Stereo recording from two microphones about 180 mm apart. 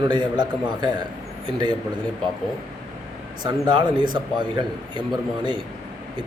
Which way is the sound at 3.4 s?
25° right (ahead or behind).